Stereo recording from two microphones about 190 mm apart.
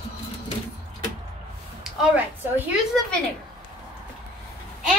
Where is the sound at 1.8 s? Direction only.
Centre (ahead or behind).